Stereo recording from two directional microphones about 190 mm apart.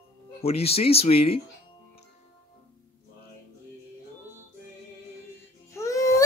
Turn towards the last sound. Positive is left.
turn(degrees=15)  # may be behind; listen again after turning